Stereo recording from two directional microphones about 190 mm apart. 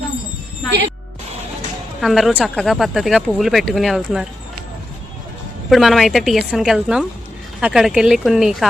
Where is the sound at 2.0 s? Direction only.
Centre (ahead or behind).